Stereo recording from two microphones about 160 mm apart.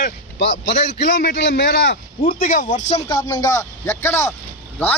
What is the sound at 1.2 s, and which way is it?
Speech, 75° left (ahead or behind).